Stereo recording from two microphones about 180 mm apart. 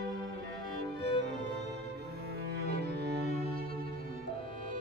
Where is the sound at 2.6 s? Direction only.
60° right (ahead or behind).